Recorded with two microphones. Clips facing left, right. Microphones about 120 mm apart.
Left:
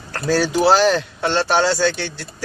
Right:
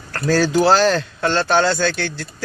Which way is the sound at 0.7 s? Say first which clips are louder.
Even; 10° left (ahead or behind).